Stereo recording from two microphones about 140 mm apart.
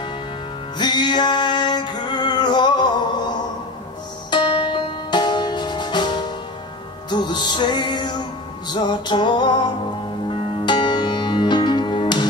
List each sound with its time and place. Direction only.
0.7 s music: 30° left (ahead or behind)